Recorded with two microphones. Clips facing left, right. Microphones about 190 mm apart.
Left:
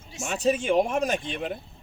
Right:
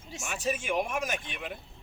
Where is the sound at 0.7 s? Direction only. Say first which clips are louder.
Left 7 dB; 35° left (ahead or behind).